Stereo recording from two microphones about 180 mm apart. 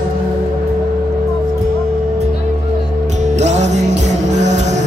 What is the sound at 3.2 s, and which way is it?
Music, 40° right (ahead or behind).